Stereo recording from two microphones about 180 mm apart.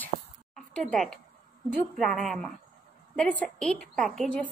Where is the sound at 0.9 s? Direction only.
5° left (ahead or behind).